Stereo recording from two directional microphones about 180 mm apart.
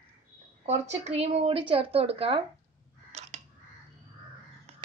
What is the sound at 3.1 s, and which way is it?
Crow, 40° right (ahead or behind).